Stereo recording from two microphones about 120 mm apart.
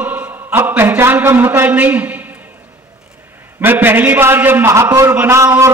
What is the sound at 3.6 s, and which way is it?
A man's voice, 15° right (ahead or behind).